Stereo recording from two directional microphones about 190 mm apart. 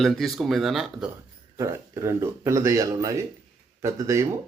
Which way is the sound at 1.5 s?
15° right (ahead or behind).